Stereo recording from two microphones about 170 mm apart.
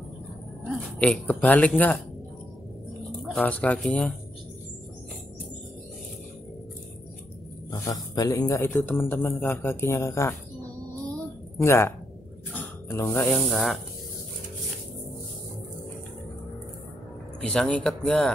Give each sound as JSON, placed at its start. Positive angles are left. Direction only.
{"t": 0.9, "sound": "speech", "side_deg": 10}
{"t": 3.2, "sound": "speech", "side_deg": 10}
{"t": 7.7, "sound": "speech", "side_deg": 20}
{"t": 11.5, "sound": "speech", "side_deg": 15}
{"t": 17.4, "sound": "speech", "side_deg": 5}